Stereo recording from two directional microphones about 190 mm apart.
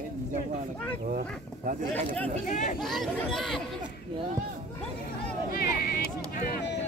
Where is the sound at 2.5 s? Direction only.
45° left (ahead or behind).